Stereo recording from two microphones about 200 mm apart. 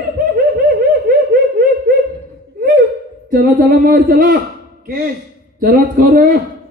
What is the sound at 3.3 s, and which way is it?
Speech, 40° right (ahead or behind).